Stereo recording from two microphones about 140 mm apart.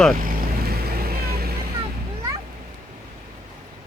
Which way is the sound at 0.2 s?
85° right.